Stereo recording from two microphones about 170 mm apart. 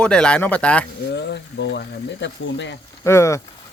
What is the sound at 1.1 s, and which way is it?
Speech, 90° left.